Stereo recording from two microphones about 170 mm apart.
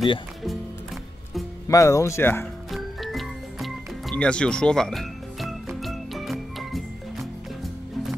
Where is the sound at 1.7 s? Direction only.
20° left (ahead or behind).